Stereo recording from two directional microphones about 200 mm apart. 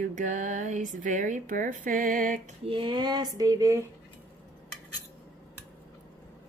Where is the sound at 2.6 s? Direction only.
25° right (ahead or behind).